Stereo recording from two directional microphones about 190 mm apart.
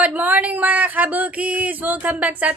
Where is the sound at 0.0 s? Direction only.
10° right (ahead or behind).